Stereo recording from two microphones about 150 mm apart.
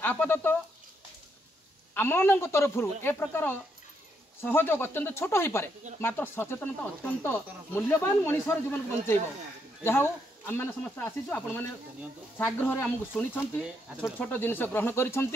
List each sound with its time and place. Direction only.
0.0 s speech: 10° left (ahead or behind)
2.0 s speech: 15° left (ahead or behind)
9.8 s speech: 15° left (ahead or behind)